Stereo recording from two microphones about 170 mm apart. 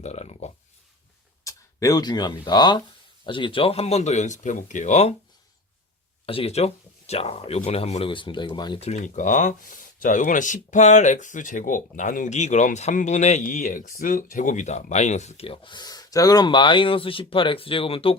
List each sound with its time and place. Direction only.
0.0 s speech: 40° left (ahead or behind)
1.5 s speech: 20° left (ahead or behind); by 5.1 s 45° left (ahead or behind)
6.2 s speech: 35° left (ahead or behind)
8.8 s speech: 45° left (ahead or behind)